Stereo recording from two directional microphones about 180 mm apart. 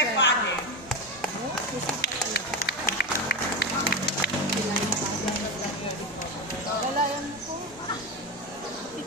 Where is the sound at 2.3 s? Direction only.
55° left (ahead or behind).